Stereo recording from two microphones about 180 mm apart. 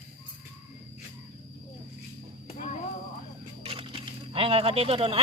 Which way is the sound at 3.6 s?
30° right (ahead or behind).